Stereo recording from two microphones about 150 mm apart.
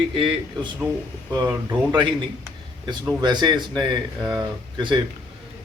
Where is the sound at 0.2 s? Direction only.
35° right (ahead or behind).